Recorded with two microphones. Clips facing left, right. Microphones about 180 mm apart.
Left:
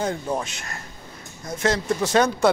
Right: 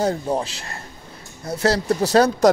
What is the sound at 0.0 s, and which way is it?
A man's voice, 35° right (ahead or behind).